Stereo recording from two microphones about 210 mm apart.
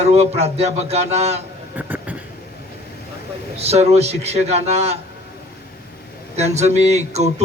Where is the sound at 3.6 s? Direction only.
30° right (ahead or behind).